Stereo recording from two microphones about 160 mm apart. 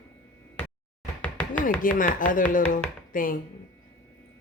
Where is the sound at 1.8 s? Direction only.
55° left (ahead or behind).